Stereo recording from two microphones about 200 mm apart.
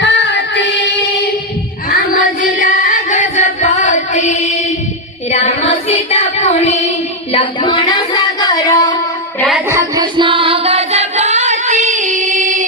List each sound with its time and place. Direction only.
0.0 s music: 60° left (ahead or behind)
2.4 s music: 40° left (ahead or behind)
5.3 s child singing: 35° left (ahead or behind)
7.3 s a sound: 25° left (ahead or behind)
9.6 s music: 15° right (ahead or behind); by 12.6 s 40° right (ahead or behind)